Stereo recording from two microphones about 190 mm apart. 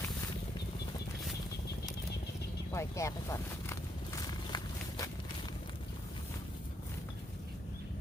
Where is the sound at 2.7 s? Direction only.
15° left (ahead or behind).